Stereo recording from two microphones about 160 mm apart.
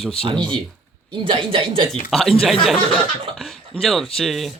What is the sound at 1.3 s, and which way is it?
Speech, 35° right (ahead or behind).